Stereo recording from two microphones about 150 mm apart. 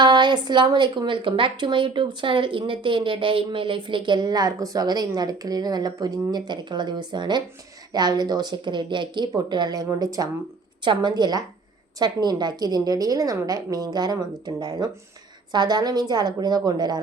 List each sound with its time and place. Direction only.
0.0 s a woman's voice: 30° right (ahead or behind)